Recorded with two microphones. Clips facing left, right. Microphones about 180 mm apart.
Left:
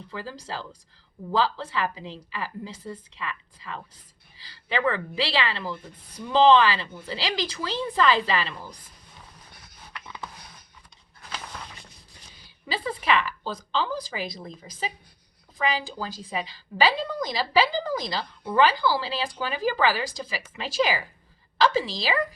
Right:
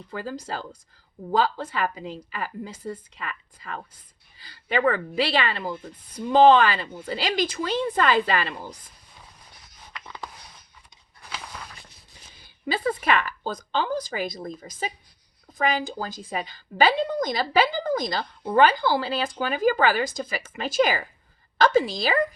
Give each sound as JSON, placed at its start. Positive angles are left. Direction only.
{"t": 0.1, "sound": "a woman's voice", "side_deg": -50}
{"t": 9.9, "sound": "a sound", "side_deg": -15}
{"t": 12.7, "sound": "a woman's voice", "side_deg": -45}